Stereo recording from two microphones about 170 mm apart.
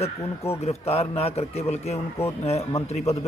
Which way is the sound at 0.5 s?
35° left (ahead or behind).